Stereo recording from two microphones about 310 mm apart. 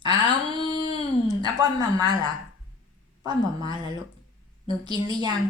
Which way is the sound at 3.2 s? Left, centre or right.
Centre.